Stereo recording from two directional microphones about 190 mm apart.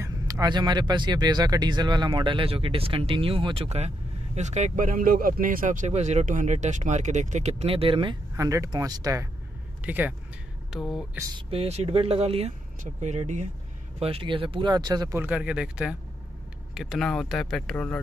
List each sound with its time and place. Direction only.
0.0 s speech: 20° right (ahead or behind); by 11.1 s centre (ahead or behind)
11.1 s speech: 20° right (ahead or behind)
11.5 s speech: 35° right (ahead or behind); by 17.9 s 5° left (ahead or behind)